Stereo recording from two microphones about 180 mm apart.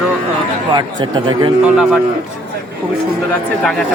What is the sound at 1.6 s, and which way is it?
Speech, 5° right (ahead or behind).